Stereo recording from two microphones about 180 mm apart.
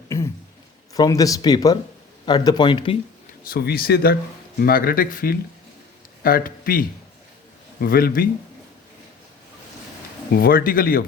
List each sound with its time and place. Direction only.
0.9 s speech: 20° left (ahead or behind)
3.4 s speech: 55° left (ahead or behind)
10.3 s speech: 55° left (ahead or behind)